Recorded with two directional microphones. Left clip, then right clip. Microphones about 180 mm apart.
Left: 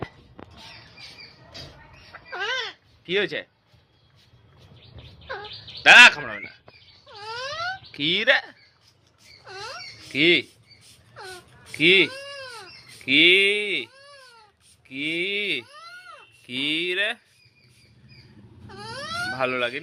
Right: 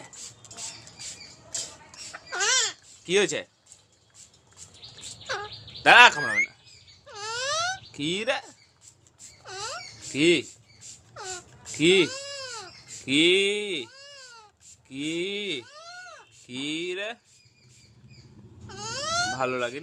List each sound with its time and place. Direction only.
2.1 s a sound: 25° right (ahead or behind)
5.8 s speech: 25° right (ahead or behind)
7.1 s wail: 30° right (ahead or behind)
7.9 s speech: 10° right (ahead or behind)
9.5 s rodents: 35° right (ahead or behind)
10.1 s speech: 15° right (ahead or behind)
11.7 s speech: 20° right (ahead or behind)
12.1 s baby cry: 40° right (ahead or behind)
13.1 s speech: 15° right (ahead or behind)
16.5 s speech: centre (ahead or behind)
18.8 s a sound: 30° right (ahead or behind)
19.3 s speech: 10° right (ahead or behind)